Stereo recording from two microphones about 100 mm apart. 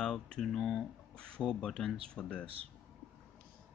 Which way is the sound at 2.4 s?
70° right (ahead or behind).